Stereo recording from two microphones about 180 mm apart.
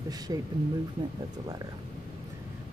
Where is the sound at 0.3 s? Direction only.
20° right (ahead or behind).